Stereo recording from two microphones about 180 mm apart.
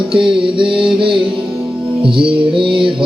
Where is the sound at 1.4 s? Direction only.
5° right (ahead or behind).